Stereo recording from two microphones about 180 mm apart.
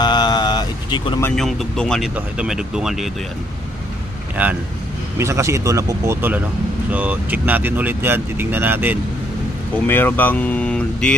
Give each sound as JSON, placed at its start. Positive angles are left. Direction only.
{"t": 0.0, "sound": "vehicle", "side_deg": 25}
{"t": 1.4, "sound": "speech", "side_deg": 0}
{"t": 4.4, "sound": "speech", "side_deg": -10}
{"t": 9.8, "sound": "speech", "side_deg": 10}